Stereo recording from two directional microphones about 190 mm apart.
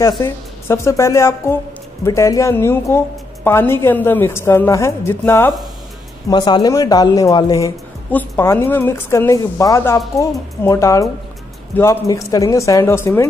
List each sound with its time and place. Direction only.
0.2 s speech: 15° left (ahead or behind)
6.3 s speech: 20° left (ahead or behind)